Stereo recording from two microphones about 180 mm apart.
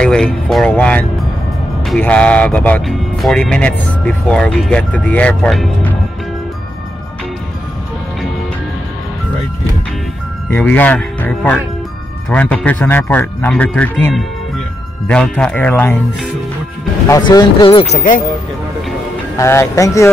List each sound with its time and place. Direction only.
0.0 s speech: 5° left (ahead or behind)
10.5 s speech: 10° left (ahead or behind)
17.1 s speech: 20° left (ahead or behind); by 18.2 s 45° left (ahead or behind)
19.3 s speech: 15° left (ahead or behind)